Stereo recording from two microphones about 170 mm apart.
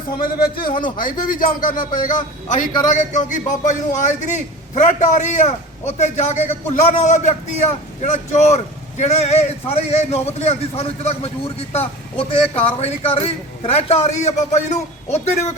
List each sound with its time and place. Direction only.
0.2 s a man's voice: 60° left (ahead or behind)
0.7 s speech: 30° left (ahead or behind)
0.9 s a man's voice: 55° left (ahead or behind)